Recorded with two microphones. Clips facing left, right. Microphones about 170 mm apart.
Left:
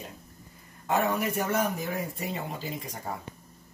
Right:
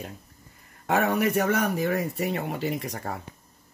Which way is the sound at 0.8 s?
75° right (ahead or behind).